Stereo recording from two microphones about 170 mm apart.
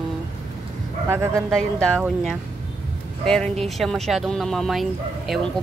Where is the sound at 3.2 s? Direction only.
5° left (ahead or behind).